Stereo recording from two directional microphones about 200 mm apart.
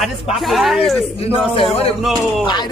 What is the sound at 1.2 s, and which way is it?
Speech, 30° left (ahead or behind).